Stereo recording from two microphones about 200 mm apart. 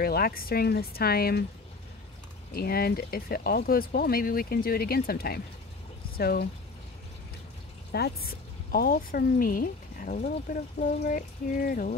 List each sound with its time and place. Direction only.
0.0 s speech: 50° left (ahead or behind)
2.5 s speech: 50° left (ahead or behind)
7.9 s speech: 55° left (ahead or behind)